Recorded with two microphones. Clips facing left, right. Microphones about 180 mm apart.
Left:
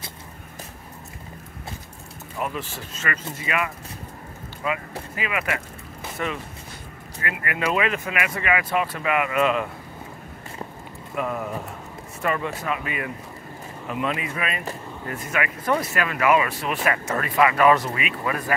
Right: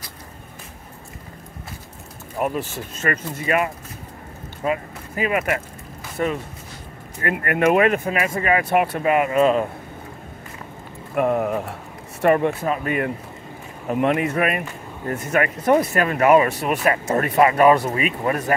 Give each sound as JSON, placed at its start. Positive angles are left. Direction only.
{"t": 2.3, "sound": "speech", "side_deg": -45}
{"t": 8.0, "sound": "speech", "side_deg": -35}
{"t": 8.6, "sound": "speech", "side_deg": -60}
{"t": 9.0, "sound": "speech", "side_deg": -35}
{"t": 11.1, "sound": "speech", "side_deg": -55}
{"t": 12.6, "sound": "speech", "side_deg": -45}
{"t": 15.4, "sound": "speech", "side_deg": -40}
{"t": 16.8, "sound": "speech", "side_deg": -30}